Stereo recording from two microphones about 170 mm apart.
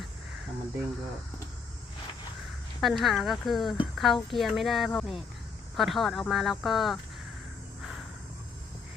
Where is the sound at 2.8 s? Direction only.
Centre (ahead or behind).